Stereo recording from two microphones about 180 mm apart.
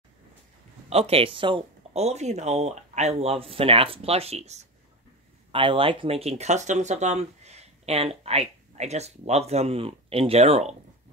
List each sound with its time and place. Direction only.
0.8 s speech: 35° right (ahead or behind)